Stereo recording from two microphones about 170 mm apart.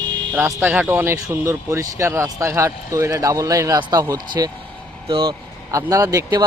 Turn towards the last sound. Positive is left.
turn(degrees=-20)  # may be behind; listen again after turning